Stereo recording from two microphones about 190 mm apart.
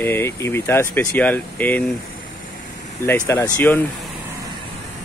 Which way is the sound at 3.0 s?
10° left (ahead or behind).